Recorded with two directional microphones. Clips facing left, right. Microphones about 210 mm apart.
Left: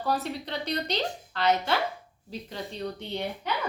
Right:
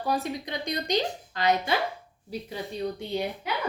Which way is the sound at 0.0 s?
10° right (ahead or behind).